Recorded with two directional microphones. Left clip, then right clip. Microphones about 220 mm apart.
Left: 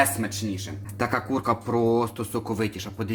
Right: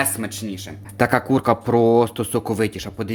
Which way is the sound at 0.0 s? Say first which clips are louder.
Left 1 dB; 40° right (ahead or behind).